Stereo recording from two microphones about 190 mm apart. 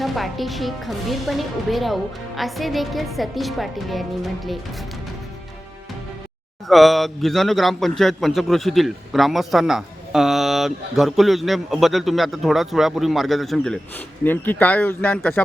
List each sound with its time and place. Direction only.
0.0 s a man's voice: centre (ahead or behind)
6.7 s a man's voice: centre (ahead or behind)